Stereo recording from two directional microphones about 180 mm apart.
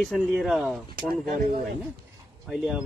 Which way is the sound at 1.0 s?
55° right (ahead or behind).